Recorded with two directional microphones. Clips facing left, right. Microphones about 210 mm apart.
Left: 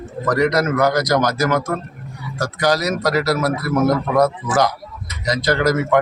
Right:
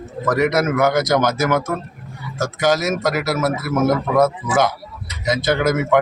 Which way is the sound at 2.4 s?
Centre (ahead or behind).